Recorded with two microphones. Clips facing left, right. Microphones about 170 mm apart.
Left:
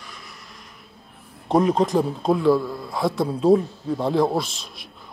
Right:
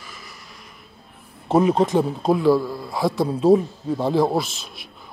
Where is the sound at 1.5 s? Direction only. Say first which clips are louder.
Right 1 dB; centre (ahead or behind).